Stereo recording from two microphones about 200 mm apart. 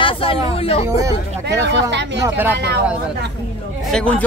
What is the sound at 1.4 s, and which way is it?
Speech, 60° right (ahead or behind).